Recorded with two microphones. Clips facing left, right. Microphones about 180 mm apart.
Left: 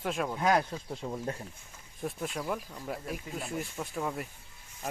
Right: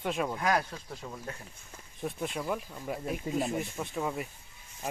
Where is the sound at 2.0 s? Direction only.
Centre (ahead or behind).